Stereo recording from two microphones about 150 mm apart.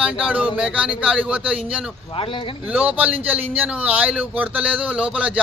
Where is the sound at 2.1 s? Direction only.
35° left (ahead or behind).